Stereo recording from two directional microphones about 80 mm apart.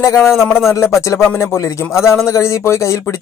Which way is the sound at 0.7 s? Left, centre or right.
Left.